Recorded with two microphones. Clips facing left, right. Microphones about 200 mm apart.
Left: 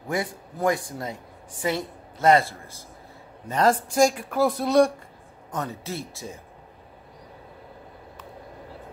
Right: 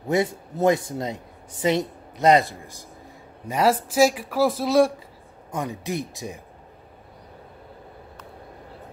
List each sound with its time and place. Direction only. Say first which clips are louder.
0.1 s speech: right 6 dB; 25° right (ahead or behind); by 4.9 s centre (ahead or behind)
5.5 s speech: right 3 dB; 15° right (ahead or behind)